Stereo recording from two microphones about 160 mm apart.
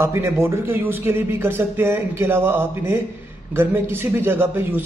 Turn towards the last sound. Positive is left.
turn(degrees=-10)  # may be behind; listen again after turning